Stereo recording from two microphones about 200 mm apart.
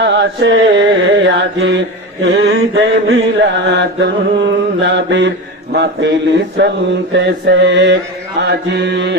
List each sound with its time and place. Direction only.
0.0 s chant: 60° right (ahead or behind)
1.3 s mantra: 65° right (ahead or behind)